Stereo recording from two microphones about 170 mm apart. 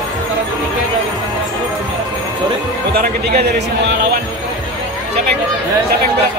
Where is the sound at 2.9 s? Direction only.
70° right (ahead or behind).